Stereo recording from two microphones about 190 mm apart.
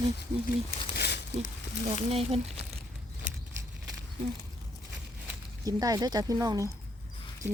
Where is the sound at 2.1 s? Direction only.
30° right (ahead or behind).